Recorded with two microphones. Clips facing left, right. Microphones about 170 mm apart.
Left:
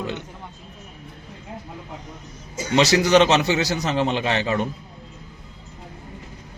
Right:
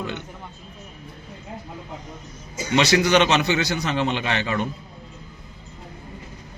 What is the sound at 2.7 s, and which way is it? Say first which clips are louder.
A man's voice: left 2 dB; 40° left (ahead or behind).